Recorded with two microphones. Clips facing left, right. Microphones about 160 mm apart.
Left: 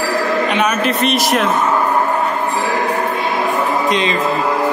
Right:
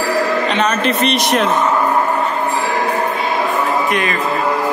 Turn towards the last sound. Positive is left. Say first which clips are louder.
# left 1 dB
turn(degrees=20)  # may be behind; listen again after turning